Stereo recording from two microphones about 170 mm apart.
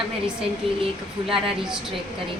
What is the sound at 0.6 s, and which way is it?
Speech, 35° right (ahead or behind).